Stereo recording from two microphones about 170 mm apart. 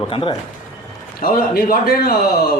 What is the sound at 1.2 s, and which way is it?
Speech, 60° left (ahead or behind).